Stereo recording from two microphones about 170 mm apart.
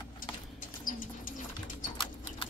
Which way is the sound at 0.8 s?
50° left (ahead or behind).